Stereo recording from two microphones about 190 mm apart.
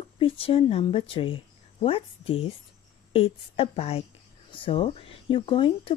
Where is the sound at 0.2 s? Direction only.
30° left (ahead or behind).